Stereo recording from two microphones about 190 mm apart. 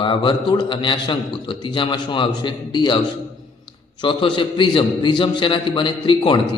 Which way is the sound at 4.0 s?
25° left (ahead or behind).